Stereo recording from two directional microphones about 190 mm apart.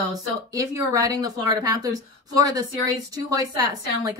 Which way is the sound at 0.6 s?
15° right (ahead or behind).